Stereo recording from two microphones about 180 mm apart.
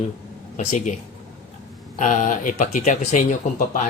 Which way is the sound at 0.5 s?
45° left (ahead or behind).